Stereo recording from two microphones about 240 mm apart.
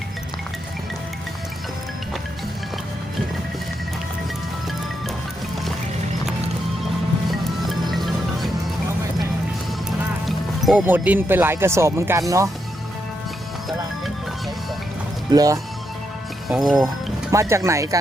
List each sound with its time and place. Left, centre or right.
7.3 s music: centre
10.2 s speech: centre
15.3 s speech: centre
16.5 s speech: centre
17.3 s speech: centre